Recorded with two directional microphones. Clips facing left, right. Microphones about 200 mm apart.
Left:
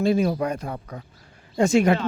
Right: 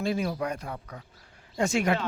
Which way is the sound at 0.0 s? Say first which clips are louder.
Left 7 dB; 25° left (ahead or behind).